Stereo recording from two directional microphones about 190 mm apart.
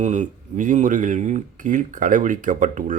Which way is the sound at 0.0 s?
40° right (ahead or behind).